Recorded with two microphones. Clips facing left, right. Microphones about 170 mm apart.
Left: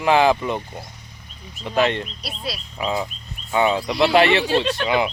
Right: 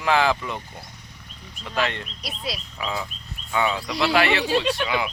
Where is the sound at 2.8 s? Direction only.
25° left (ahead or behind).